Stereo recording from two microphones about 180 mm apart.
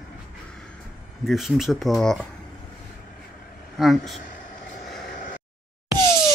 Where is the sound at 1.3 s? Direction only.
Centre (ahead or behind).